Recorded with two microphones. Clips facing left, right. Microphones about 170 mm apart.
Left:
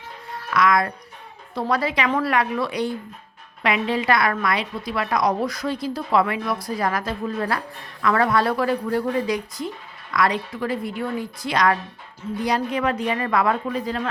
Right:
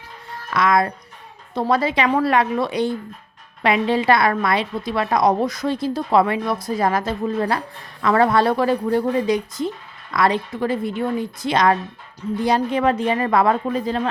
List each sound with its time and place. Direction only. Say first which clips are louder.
0.5 s a woman's voice: right 2 dB; 25° right (ahead or behind)